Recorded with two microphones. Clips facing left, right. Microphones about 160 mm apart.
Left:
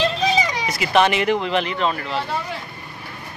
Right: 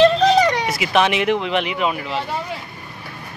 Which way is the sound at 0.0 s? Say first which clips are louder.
Right 7 dB; 65° right (ahead or behind).